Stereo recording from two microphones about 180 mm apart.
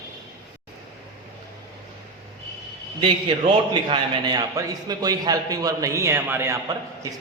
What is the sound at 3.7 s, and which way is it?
A man's voice, 25° right (ahead or behind).